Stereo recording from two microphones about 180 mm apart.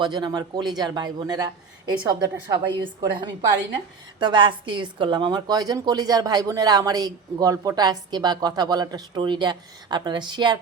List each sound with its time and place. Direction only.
0.0 s speech: 25° right (ahead or behind)
4.2 s speech: 25° right (ahead or behind)